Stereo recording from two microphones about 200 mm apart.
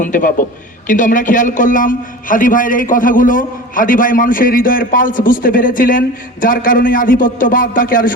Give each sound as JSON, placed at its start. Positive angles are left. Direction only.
{"t": 0.0, "sound": "a man's voice", "side_deg": 40}